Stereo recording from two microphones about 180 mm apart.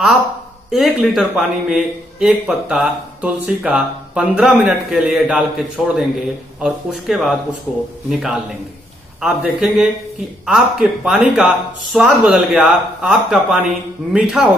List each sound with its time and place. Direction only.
0.7 s a man's voice: centre (ahead or behind)